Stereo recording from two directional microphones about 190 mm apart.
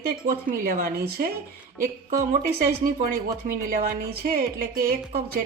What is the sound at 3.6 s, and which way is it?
Speech, 55° right (ahead or behind).